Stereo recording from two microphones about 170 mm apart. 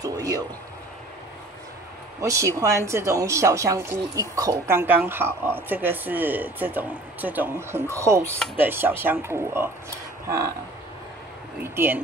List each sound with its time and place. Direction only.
0.0 s speech: 20° right (ahead or behind)
2.2 s speech: 20° right (ahead or behind)
10.2 s a sound: 15° right (ahead or behind)
11.6 s speech: 15° right (ahead or behind)